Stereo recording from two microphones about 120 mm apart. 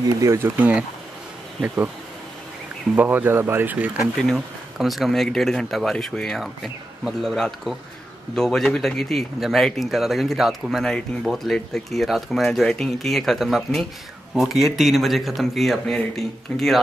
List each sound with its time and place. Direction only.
0.2 s speech: 25° right (ahead or behind)
0.6 s speech: 10° right (ahead or behind)
3.0 s speech: 15° right (ahead or behind)
4.2 s speech: centre (ahead or behind)